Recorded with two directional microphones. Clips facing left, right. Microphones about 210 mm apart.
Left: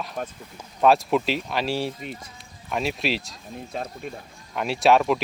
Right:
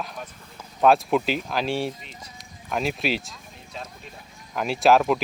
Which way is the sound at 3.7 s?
55° left (ahead or behind).